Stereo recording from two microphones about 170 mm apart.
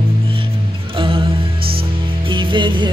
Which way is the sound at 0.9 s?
30° right (ahead or behind).